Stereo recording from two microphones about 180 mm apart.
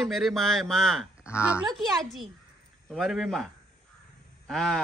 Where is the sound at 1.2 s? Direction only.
15° left (ahead or behind).